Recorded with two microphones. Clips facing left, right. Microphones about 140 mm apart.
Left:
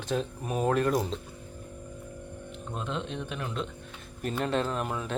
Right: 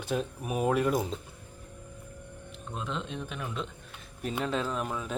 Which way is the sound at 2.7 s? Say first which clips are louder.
Left 1 dB; centre (ahead or behind).